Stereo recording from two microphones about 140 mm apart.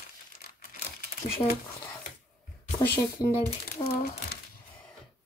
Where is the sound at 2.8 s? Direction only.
15° left (ahead or behind).